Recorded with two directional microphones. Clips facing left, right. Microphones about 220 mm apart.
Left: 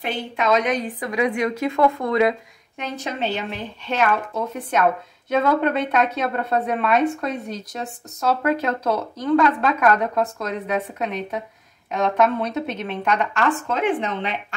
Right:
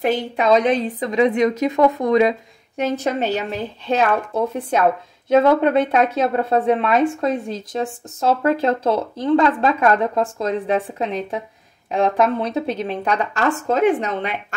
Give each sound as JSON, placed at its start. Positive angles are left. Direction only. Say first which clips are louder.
{"t": 0.0, "sound": "a woman's voice", "louder": "right 6 dB", "side_deg": -45}
{"t": 0.5, "sound": "speech", "louder": "right 5 dB", "side_deg": -30}
{"t": 2.8, "sound": "speech", "louder": "right 7 dB", "side_deg": -45}